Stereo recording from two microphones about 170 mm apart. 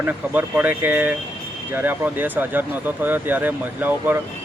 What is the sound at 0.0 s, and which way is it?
Speech, 10° right (ahead or behind).